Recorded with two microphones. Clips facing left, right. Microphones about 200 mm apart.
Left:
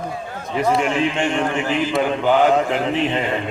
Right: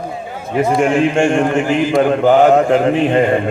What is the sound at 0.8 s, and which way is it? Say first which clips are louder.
A man's voice: right 7 dB; 45° right (ahead or behind).